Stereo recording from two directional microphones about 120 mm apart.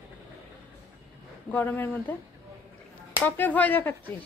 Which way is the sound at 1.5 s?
15° left (ahead or behind).